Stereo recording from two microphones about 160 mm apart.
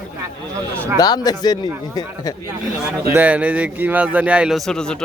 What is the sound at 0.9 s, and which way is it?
Speech, 25° left (ahead or behind).